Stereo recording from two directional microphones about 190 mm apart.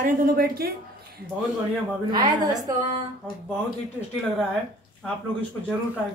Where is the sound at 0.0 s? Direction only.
50° right (ahead or behind).